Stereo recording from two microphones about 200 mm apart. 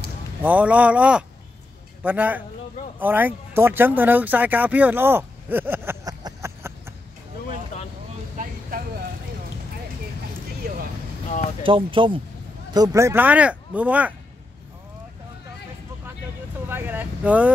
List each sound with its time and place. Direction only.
0.4 s speech: 10° right (ahead or behind)
7.4 s vehicle: 35° left (ahead or behind)
8.4 s vehicle: 45° right (ahead or behind)
11.6 s speech: 25° right (ahead or behind); by 14.1 s 5° right (ahead or behind)
16.6 s speech: 10° right (ahead or behind)